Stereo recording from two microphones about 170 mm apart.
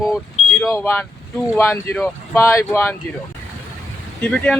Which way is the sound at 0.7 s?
15° left (ahead or behind).